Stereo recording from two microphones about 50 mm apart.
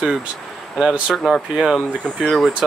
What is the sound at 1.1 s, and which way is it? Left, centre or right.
Speech, centre.